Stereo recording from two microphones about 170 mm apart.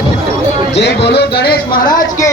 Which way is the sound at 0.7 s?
90° left.